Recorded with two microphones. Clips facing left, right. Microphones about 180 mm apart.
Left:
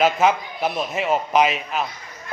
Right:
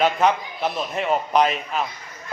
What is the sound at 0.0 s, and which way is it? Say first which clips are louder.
A man's voice: left 1 dB; 5° left (ahead or behind).